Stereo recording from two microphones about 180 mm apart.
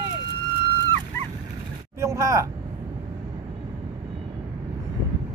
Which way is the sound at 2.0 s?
15° right (ahead or behind).